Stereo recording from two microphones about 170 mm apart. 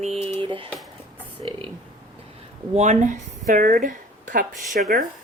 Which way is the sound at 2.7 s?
45° right (ahead or behind).